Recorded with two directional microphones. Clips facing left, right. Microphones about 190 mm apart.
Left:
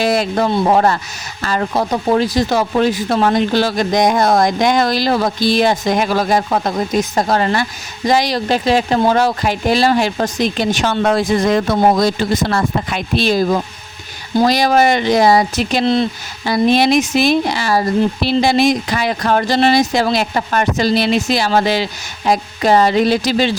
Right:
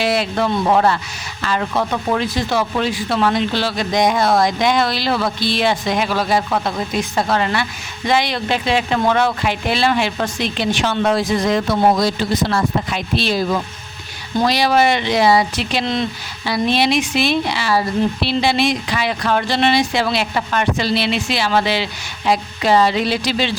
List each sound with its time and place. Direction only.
0.0 s a man's voice: 45° left (ahead or behind)